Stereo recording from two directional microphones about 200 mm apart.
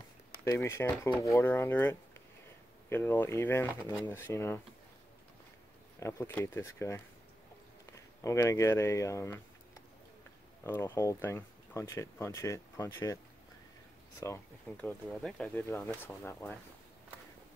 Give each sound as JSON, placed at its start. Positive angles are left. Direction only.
{"t": 0.5, "sound": "speech", "side_deg": 15}
{"t": 5.9, "sound": "speech", "side_deg": 15}
{"t": 10.6, "sound": "speech", "side_deg": 10}
{"t": 14.2, "sound": "speech", "side_deg": 10}